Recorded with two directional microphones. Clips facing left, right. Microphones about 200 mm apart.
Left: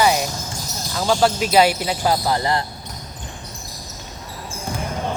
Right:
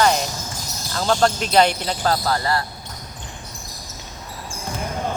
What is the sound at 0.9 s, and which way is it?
Speech, 5° left (ahead or behind).